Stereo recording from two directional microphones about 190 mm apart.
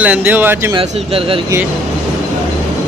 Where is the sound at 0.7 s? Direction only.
30° right (ahead or behind).